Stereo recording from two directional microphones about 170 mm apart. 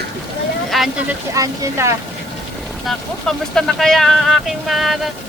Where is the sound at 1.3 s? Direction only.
20° right (ahead or behind).